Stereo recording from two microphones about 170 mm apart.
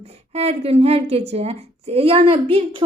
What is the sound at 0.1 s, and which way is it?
A woman's voice, 40° right (ahead or behind).